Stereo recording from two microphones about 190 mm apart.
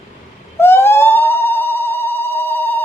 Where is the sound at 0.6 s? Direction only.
10° left (ahead or behind).